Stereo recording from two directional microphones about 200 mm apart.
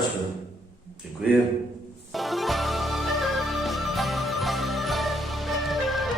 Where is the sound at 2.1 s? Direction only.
Centre (ahead or behind).